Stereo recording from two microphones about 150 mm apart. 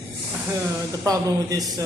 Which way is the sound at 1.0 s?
25° right (ahead or behind).